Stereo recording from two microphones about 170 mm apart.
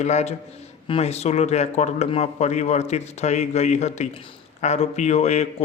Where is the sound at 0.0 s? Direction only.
40° left (ahead or behind).